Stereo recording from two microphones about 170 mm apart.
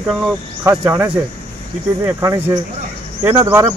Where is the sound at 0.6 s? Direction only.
10° right (ahead or behind).